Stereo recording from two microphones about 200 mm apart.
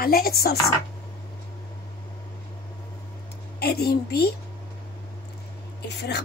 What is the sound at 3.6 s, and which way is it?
Speech, 50° left (ahead or behind).